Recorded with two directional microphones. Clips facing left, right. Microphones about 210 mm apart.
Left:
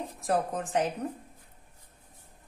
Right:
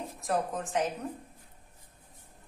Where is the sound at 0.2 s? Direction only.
35° left (ahead or behind).